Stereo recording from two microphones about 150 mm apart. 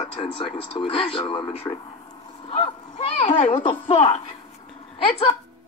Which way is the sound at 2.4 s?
35° left (ahead or behind).